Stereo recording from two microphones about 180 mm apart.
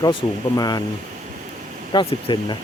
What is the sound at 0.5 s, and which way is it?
Speech, 20° left (ahead or behind).